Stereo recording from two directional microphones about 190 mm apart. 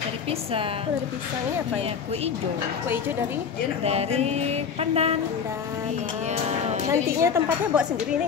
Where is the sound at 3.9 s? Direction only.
35° right (ahead or behind).